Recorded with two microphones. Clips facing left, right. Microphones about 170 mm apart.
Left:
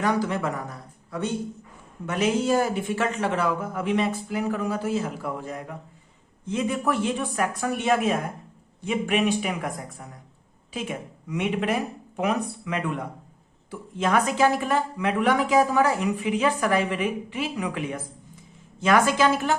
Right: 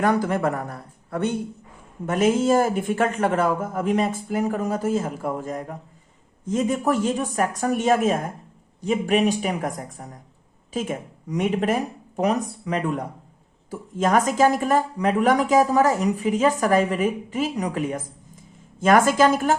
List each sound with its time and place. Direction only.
0.0 s speech: 50° right (ahead or behind)
2.0 s speech: 45° right (ahead or behind)